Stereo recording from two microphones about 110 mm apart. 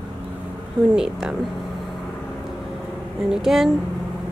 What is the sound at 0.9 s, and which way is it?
Speech, 5° right (ahead or behind).